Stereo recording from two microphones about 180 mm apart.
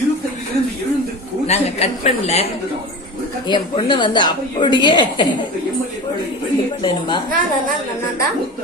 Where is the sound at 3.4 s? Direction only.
25° left (ahead or behind).